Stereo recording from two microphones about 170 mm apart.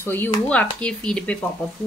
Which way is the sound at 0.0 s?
15° left (ahead or behind).